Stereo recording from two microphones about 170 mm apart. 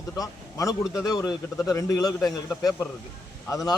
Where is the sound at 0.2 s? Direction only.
20° left (ahead or behind).